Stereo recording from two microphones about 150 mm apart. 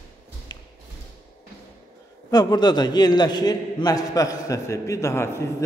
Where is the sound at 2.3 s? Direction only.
25° left (ahead or behind).